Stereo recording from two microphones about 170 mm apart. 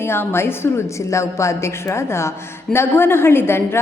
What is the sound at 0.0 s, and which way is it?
A woman's voice, 15° left (ahead or behind).